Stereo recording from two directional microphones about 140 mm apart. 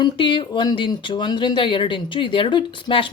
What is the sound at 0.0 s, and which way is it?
Speech, 35° left (ahead or behind).